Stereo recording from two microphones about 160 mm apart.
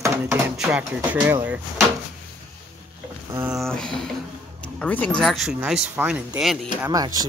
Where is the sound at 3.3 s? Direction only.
20° right (ahead or behind).